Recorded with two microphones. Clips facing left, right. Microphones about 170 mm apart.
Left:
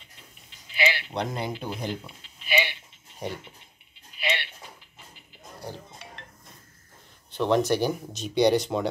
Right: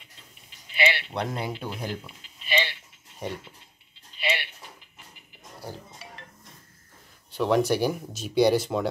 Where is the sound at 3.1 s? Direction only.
Centre (ahead or behind).